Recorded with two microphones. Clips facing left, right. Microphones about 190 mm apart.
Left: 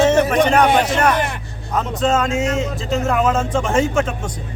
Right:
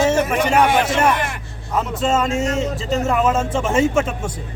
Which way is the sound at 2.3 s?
40° right (ahead or behind).